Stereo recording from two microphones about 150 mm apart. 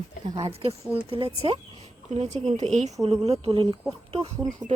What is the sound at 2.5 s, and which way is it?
Speech, 50° right (ahead or behind).